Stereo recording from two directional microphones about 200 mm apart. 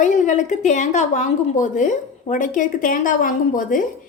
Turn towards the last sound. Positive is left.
turn(degrees=40)  # may be behind; listen again after turning